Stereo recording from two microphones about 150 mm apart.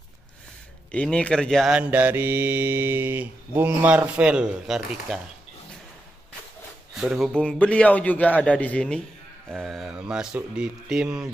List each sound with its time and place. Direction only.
0.9 s speech: 5° left (ahead or behind)
6.9 s a man's voice: 5° right (ahead or behind)